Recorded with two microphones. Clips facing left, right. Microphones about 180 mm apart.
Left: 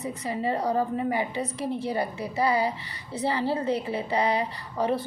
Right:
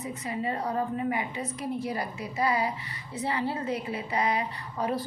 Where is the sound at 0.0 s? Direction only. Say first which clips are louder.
Left 3 dB; 35° left (ahead or behind).